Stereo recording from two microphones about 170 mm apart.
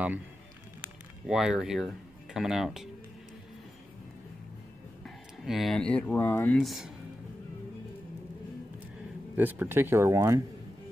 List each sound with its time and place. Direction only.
1.2 s speech: 5° right (ahead or behind)
5.0 s speech: centre (ahead or behind)
9.3 s speech: 10° right (ahead or behind)